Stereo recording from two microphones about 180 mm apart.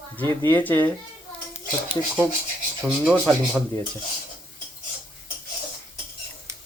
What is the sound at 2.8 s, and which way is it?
Speech, centre (ahead or behind).